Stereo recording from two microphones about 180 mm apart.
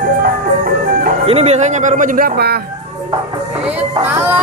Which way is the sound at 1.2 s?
35° right (ahead or behind).